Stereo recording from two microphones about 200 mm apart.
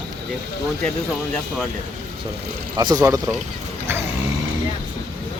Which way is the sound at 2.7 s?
20° right (ahead or behind).